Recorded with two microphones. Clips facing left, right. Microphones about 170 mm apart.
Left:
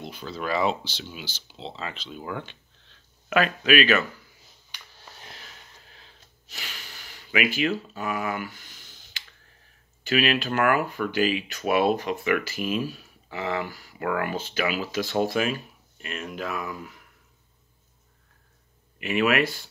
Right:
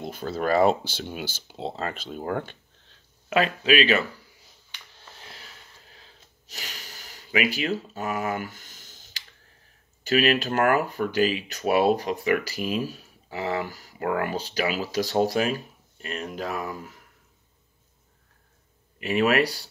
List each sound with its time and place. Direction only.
0.0 s speech: 50° right (ahead or behind)
3.3 s speech: 25° right (ahead or behind)
5.3 s sniff: 35° right (ahead or behind)
10.0 s speech: 40° right (ahead or behind)
18.9 s speech: 40° right (ahead or behind)